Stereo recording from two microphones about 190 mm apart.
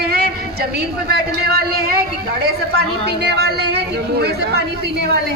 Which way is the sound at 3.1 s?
60° right (ahead or behind).